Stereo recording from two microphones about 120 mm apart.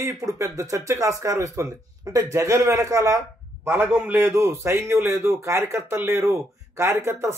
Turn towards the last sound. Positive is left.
turn(degrees=-25)  # may be behind; listen again after turning